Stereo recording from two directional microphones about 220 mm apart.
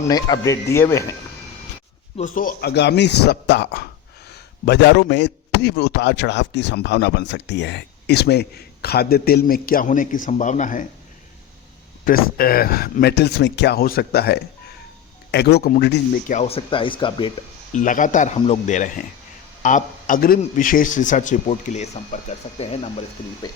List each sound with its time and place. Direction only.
0.1 s speech: 15° left (ahead or behind)
2.1 s a man's voice: 35° left (ahead or behind)
12.0 s a man's voice: 40° left (ahead or behind)
16.3 s speech: 30° left (ahead or behind)
17.7 s a man's voice: 35° left (ahead or behind)